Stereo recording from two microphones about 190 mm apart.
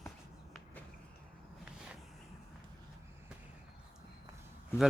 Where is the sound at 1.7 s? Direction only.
5° right (ahead or behind).